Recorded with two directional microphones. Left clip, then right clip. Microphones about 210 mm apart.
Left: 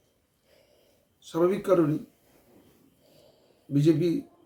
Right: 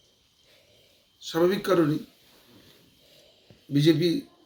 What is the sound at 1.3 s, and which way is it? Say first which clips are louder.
Speech: even; 10° left (ahead or behind).